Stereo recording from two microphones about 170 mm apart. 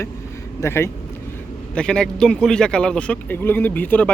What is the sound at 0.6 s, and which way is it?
A man's voice, 15° left (ahead or behind).